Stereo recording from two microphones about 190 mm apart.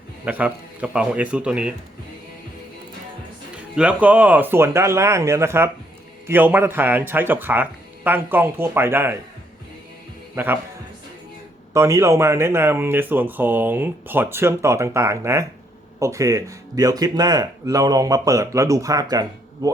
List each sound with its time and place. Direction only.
0.3 s speech: 10° right (ahead or behind)
3.8 s speech: 5° right (ahead or behind)
10.3 s a man's voice: 10° right (ahead or behind)
11.7 s speech: 15° right (ahead or behind)